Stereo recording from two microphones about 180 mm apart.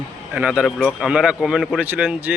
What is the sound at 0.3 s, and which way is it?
A man's voice, 5° right (ahead or behind).